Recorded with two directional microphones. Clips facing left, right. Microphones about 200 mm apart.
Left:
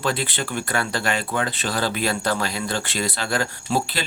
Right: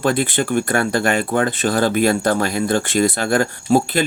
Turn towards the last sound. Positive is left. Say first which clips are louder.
# right 8 dB
turn(degrees=-50)  # may be behind; listen again after turning